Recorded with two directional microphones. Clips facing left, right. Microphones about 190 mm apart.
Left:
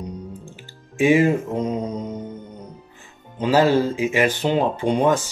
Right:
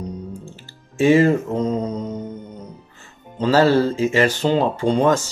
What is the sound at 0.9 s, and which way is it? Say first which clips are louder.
Speech: right 2 dB; 15° left (ahead or behind).